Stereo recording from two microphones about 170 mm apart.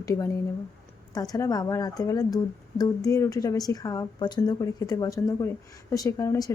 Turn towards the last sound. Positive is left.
turn(degrees=20)  # may be behind; listen again after turning